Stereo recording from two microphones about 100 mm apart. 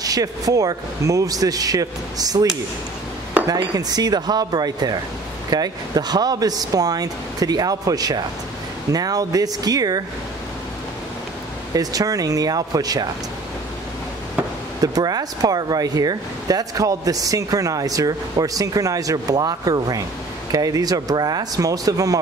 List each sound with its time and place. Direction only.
0.0 s speech: 40° right (ahead or behind)
3.7 s speech: 40° right (ahead or behind)
11.7 s speech: 35° right (ahead or behind)
14.8 s speech: 40° right (ahead or behind)